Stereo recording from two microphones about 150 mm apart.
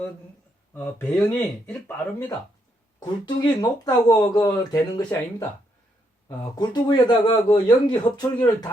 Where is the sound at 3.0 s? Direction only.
30° left (ahead or behind).